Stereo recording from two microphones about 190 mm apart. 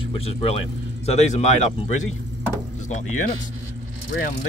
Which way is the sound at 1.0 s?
35° left (ahead or behind).